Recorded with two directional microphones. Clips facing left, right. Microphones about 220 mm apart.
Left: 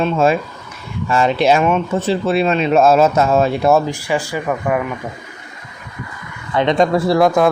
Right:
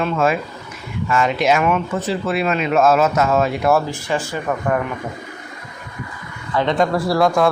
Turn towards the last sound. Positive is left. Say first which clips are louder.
# left 3 dB
turn(degrees=20)  # may be behind; listen again after turning